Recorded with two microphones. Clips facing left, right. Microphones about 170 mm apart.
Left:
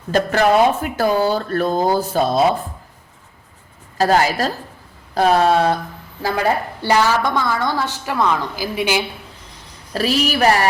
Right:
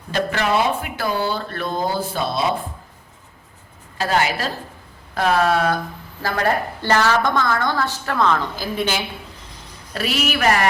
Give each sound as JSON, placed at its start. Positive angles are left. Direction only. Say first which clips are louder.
{"t": 0.1, "sound": "speech", "louder": "left 5 dB", "side_deg": 45}
{"t": 3.9, "sound": "speech", "louder": "left 5 dB", "side_deg": 40}
{"t": 6.2, "sound": "a woman's voice", "louder": "left 2 dB", "side_deg": 10}
{"t": 9.9, "sound": "speech", "louder": "left 4 dB", "side_deg": 35}